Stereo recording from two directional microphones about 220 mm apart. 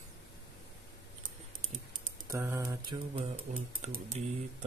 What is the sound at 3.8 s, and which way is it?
Speech, 30° right (ahead or behind).